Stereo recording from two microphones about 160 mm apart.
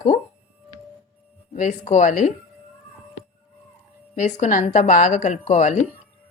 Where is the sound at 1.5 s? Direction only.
50° left (ahead or behind).